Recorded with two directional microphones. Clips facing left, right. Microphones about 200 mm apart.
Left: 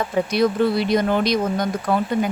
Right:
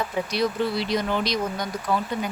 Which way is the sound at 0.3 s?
55° left (ahead or behind).